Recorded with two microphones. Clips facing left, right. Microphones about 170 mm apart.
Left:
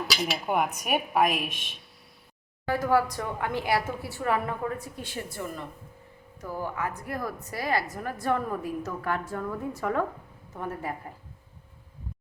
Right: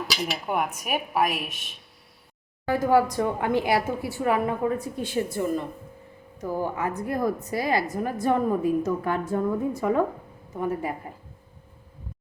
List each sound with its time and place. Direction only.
0.3 s speech: centre (ahead or behind)
2.6 s a woman's voice: 20° right (ahead or behind)